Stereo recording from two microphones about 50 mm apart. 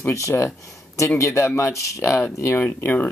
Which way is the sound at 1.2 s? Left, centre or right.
Left.